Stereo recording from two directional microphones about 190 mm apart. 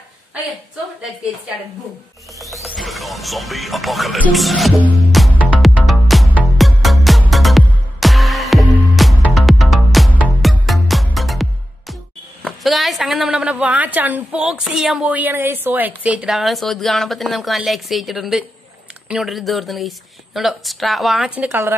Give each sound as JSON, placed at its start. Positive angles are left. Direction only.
{"t": 2.4, "sound": "music", "side_deg": 0}
{"t": 12.4, "sound": "a woman's voice", "side_deg": 0}